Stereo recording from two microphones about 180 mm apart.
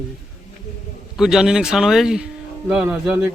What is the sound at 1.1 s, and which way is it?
Speech, centre (ahead or behind).